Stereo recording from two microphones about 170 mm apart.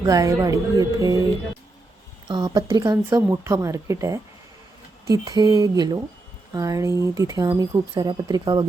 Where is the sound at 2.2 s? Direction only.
25° right (ahead or behind).